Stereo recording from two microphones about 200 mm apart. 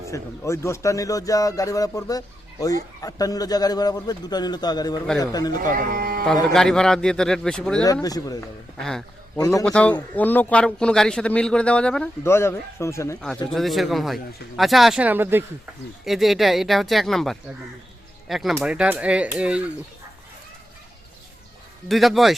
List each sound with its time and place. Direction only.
0.1 s a man's voice: 15° left (ahead or behind)
5.7 s speech: 45° right (ahead or behind)
6.5 s a man's voice: centre (ahead or behind)
8.0 s a man's voice: 20° left (ahead or behind)
8.8 s a man's voice: 5° left (ahead or behind)
9.4 s speech: 15° left (ahead or behind)
9.6 s a man's voice: 5° left (ahead or behind)
13.5 s a man's voice: centre (ahead or behind)
21.8 s a man's voice: centre (ahead or behind)